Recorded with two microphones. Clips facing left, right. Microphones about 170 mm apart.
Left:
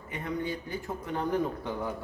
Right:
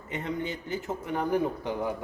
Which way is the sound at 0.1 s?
25° right (ahead or behind).